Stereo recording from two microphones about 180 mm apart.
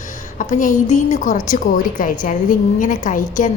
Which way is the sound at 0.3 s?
45° left (ahead or behind).